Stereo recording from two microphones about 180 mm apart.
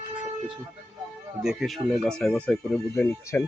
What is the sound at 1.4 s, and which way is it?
Speech, centre (ahead or behind).